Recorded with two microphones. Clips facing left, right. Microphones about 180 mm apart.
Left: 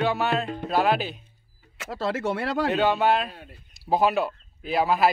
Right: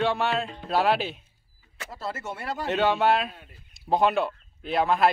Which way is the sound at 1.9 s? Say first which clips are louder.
Left 8 dB; 90° left.